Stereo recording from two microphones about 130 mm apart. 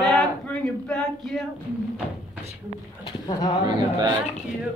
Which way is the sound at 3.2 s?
35° left (ahead or behind).